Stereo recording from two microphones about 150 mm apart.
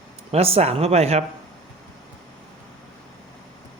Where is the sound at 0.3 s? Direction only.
40° right (ahead or behind).